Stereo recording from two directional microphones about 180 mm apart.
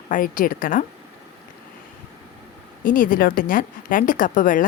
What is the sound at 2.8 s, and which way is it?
A woman's voice, 50° left (ahead or behind).